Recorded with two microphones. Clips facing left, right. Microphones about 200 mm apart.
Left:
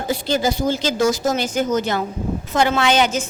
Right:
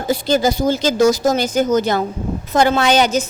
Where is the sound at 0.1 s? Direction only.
45° right (ahead or behind).